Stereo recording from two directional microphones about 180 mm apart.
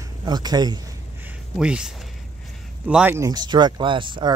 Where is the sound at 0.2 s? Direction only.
25° right (ahead or behind).